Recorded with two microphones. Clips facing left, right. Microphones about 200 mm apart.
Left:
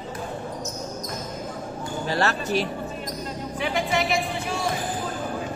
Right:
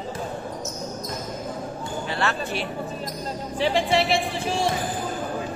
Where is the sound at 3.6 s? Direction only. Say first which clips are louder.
Right 4 dB; 30° right (ahead or behind).